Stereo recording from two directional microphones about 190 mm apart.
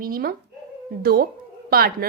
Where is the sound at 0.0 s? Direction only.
50° right (ahead or behind).